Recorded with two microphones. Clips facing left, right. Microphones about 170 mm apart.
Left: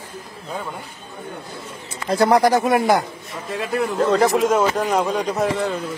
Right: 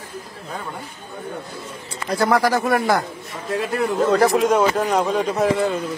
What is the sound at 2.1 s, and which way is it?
Speech, 25° left (ahead or behind).